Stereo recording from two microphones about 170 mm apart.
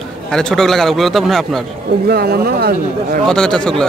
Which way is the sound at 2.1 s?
65° right (ahead or behind).